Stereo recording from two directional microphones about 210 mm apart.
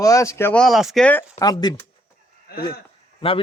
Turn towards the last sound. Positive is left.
turn(degrees=25)  # may be behind; listen again after turning